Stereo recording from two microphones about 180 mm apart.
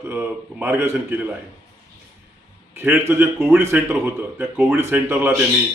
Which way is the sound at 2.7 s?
15° right (ahead or behind).